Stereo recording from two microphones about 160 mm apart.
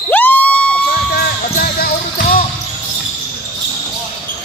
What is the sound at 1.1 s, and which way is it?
Basketball bounce, 70° left (ahead or behind).